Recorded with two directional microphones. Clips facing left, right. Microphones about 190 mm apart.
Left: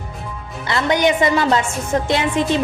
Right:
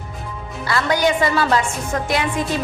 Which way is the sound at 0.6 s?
20° left (ahead or behind).